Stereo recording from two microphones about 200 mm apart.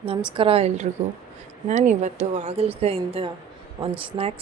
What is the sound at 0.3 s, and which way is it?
A woman's voice, 30° right (ahead or behind).